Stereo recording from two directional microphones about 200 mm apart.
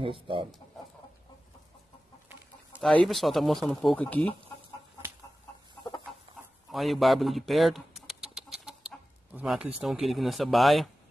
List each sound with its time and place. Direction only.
0.0 s speech: 25° right (ahead or behind)
3.1 s speech: centre (ahead or behind)
6.7 s speech: centre (ahead or behind)
8.1 s chicken: centre (ahead or behind)
9.3 s speech: 5° right (ahead or behind)